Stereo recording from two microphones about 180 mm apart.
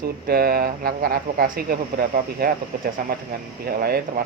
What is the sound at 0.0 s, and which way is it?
A man's voice, 60° right (ahead or behind).